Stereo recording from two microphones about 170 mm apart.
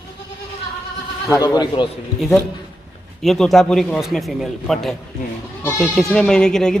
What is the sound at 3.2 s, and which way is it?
A man's voice, centre (ahead or behind).